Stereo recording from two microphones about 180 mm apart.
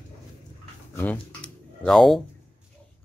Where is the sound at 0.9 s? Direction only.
10° left (ahead or behind).